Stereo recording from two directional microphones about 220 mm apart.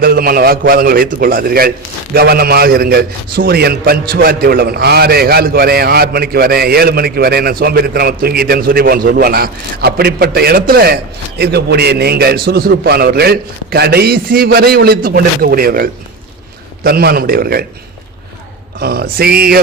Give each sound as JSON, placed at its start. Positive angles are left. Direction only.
{"t": 0.0, "sound": "a man's voice", "side_deg": -40}
{"t": 18.8, "sound": "a man's voice", "side_deg": -45}